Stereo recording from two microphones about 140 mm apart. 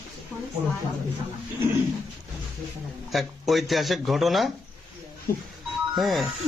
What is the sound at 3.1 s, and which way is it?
Speech, centre (ahead or behind).